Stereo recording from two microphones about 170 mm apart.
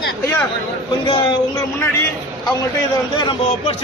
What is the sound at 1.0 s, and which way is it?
Speech, 30° left (ahead or behind).